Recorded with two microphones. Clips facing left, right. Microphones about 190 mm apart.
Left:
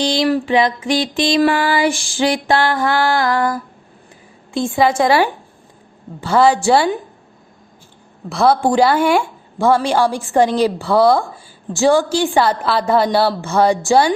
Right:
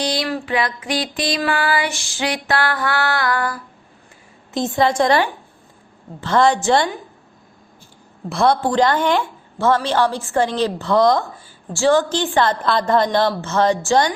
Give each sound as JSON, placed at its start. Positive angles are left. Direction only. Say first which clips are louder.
{"t": 0.2, "sound": "a sound", "louder": "left 7 dB", "side_deg": 25}
{"t": 4.7, "sound": "a woman's voice", "louder": "left 2 dB", "side_deg": 5}
{"t": 8.3, "sound": "a woman's voice", "louder": "left 3 dB", "side_deg": 0}